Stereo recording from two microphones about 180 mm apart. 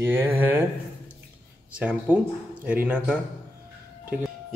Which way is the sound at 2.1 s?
10° right (ahead or behind).